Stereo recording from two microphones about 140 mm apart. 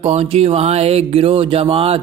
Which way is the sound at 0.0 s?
50° right (ahead or behind).